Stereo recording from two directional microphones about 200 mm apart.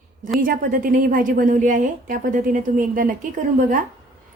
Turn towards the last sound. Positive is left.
turn(degrees=-40)  # may be behind; listen again after turning